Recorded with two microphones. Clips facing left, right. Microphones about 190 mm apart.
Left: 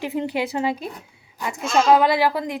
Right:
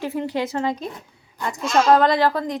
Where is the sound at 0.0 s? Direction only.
15° left (ahead or behind).